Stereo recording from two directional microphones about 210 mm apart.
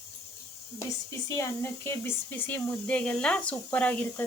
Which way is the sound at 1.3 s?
15° left (ahead or behind).